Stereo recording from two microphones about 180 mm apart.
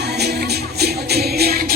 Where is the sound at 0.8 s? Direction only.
60° right (ahead or behind).